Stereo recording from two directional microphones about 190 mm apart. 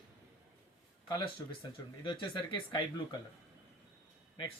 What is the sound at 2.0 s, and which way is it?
Speech, 25° left (ahead or behind).